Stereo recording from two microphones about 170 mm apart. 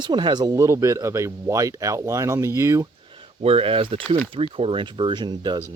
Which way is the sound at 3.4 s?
35° right (ahead or behind).